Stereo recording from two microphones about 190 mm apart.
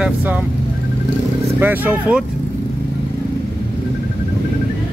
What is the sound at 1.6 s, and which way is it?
Speech, 10° right (ahead or behind).